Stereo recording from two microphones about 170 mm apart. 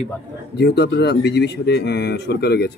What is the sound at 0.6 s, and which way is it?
Speech, 80° left.